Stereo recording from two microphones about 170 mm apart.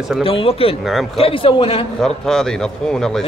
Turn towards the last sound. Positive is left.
turn(degrees=5)  # may be behind; listen again after turning